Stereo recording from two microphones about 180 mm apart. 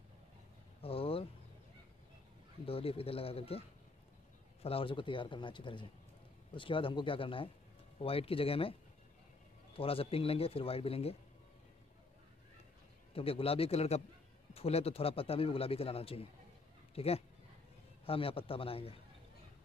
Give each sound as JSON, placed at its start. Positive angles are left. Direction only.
{"t": 0.8, "sound": "vehicle", "side_deg": 30}
{"t": 2.6, "sound": "a man's voice", "side_deg": 30}
{"t": 4.6, "sound": "a man's voice", "side_deg": 30}
{"t": 9.8, "sound": "a man's voice", "side_deg": 30}
{"t": 13.1, "sound": "a man's voice", "side_deg": 30}